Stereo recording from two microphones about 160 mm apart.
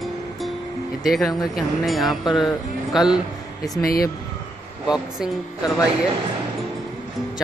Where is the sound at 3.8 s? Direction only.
65° left (ahead or behind).